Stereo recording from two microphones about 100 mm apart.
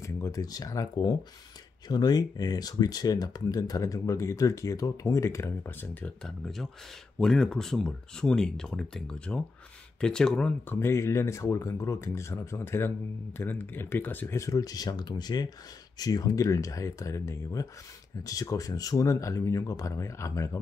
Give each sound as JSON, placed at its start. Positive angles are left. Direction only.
{"t": 0.0, "sound": "speech", "side_deg": 35}
{"t": 6.2, "sound": "speech", "side_deg": 5}
{"t": 10.7, "sound": "speech", "side_deg": 25}